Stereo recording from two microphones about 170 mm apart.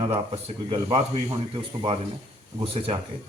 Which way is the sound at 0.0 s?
35° right (ahead or behind).